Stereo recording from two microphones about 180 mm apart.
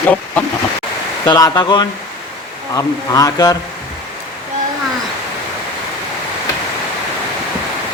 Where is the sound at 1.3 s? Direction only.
20° left (ahead or behind).